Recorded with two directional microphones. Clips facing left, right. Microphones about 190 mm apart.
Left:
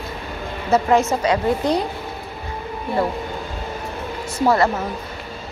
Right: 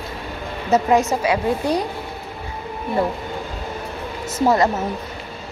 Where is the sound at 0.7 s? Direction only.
20° right (ahead or behind).